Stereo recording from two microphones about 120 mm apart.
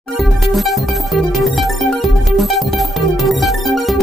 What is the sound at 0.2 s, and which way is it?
Music, centre (ahead or behind).